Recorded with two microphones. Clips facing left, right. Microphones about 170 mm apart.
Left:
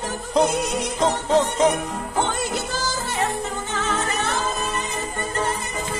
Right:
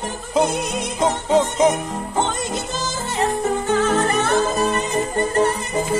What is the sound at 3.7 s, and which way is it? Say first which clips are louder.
Music: right 8 dB; 45° right (ahead or behind).